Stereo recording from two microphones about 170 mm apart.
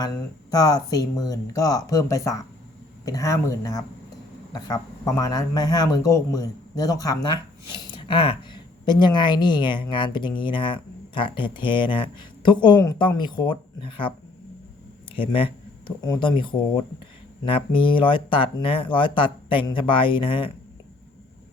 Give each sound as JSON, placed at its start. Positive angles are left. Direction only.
{"t": 0.5, "sound": "speech", "side_deg": 20}
{"t": 15.1, "sound": "speech", "side_deg": 30}